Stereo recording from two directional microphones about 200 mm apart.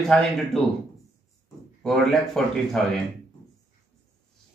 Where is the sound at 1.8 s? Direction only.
Centre (ahead or behind).